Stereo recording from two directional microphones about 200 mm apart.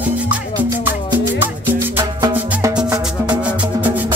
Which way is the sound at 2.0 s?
25° right (ahead or behind).